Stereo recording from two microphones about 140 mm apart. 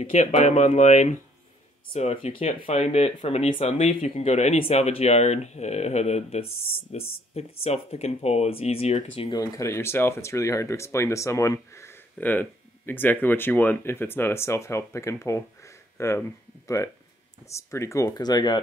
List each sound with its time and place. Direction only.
0.2 s speech: 55° left (ahead or behind)
9.3 s speech: 25° left (ahead or behind)